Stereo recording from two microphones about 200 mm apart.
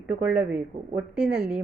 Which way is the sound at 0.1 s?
5° right (ahead or behind).